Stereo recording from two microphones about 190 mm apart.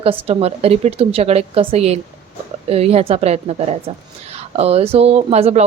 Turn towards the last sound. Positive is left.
turn(degrees=-35)  # may be behind; listen again after turning